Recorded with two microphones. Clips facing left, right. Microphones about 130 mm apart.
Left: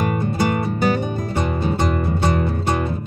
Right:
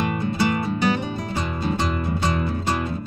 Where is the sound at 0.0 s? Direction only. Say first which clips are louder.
Left 2 dB; 45° left (ahead or behind).